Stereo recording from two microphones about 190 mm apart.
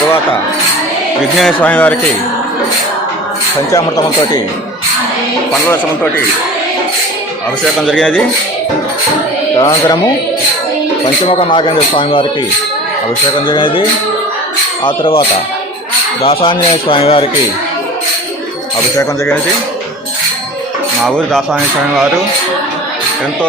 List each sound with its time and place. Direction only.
1.4 s speech: 5° left (ahead or behind)
3.7 s speech: 20° left (ahead or behind)
5.6 s speech: 10° left (ahead or behind)
7.8 s speech: centre (ahead or behind)
9.6 s speech: 20° left (ahead or behind)
11.3 s speech: 25° left (ahead or behind)
13.5 s speech: 25° left (ahead or behind)
14.8 s speech: 25° left (ahead or behind)
18.9 s speech: 15° left (ahead or behind)
21.0 s speech: centre (ahead or behind)